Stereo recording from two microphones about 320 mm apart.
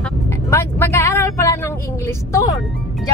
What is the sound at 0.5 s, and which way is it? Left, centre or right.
Vehicle, centre.